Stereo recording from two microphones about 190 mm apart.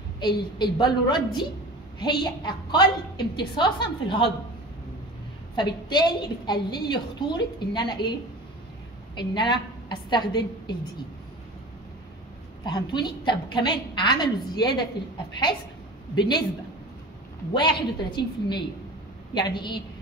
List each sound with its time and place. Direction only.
0.2 s a woman's voice: 20° left (ahead or behind)
5.6 s a woman's voice: 25° left (ahead or behind)
9.1 s a woman's voice: 25° left (ahead or behind)
12.6 s a woman's voice: 20° left (ahead or behind)
16.2 s a woman's voice: 25° left (ahead or behind)
17.5 s a woman's voice: 25° left (ahead or behind)